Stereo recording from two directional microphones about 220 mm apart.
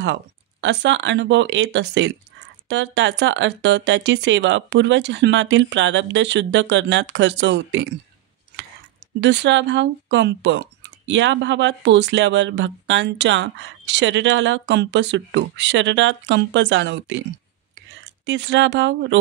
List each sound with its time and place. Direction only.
0.0 s speech: 55° right (ahead or behind)
9.2 s speech: 55° right (ahead or behind)
18.2 s speech: 55° right (ahead or behind)